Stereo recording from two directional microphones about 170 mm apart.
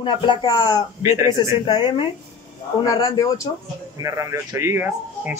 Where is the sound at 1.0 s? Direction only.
15° right (ahead or behind).